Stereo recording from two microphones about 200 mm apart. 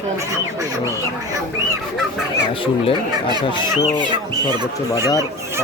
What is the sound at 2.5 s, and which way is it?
Speech, 25° left (ahead or behind).